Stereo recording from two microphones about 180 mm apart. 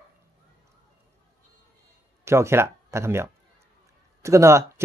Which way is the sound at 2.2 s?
15° right (ahead or behind).